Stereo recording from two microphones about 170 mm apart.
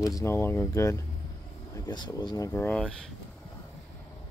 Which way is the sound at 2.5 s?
5° left (ahead or behind).